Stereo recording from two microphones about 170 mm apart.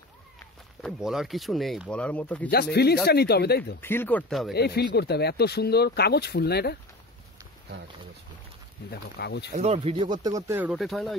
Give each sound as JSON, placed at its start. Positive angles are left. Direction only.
{"t": 0.8, "sound": "speech", "side_deg": 0}
{"t": 2.5, "sound": "speech", "side_deg": 70}
{"t": 3.8, "sound": "speech", "side_deg": 10}
{"t": 4.3, "sound": "speech", "side_deg": 0}
{"t": 4.6, "sound": "speech", "side_deg": 70}
{"t": 8.9, "sound": "speech", "side_deg": 75}
{"t": 9.6, "sound": "speech", "side_deg": -35}